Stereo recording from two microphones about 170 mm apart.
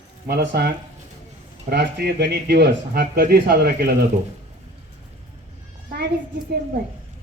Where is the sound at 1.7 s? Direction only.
80° right.